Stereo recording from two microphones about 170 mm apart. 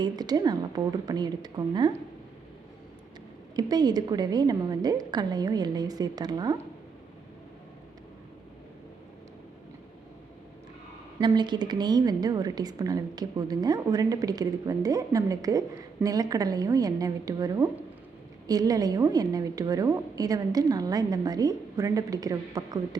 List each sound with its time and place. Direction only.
0.0 s a woman's voice: 25° right (ahead or behind)
3.5 s a woman's voice: 25° right (ahead or behind)
11.2 s a woman's voice: 25° right (ahead or behind)